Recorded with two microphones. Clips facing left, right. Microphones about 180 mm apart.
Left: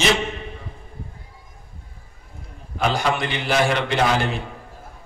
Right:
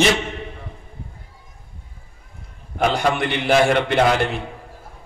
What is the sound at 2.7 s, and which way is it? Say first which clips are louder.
A man's voice: right 2 dB; 60° right (ahead or behind).